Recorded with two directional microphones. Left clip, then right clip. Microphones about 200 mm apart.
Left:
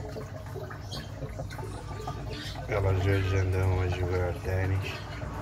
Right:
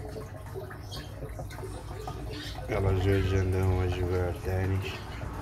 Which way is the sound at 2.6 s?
30° right (ahead or behind).